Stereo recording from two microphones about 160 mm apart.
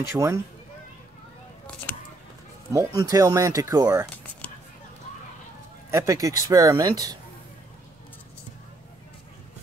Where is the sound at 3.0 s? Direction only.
20° right (ahead or behind).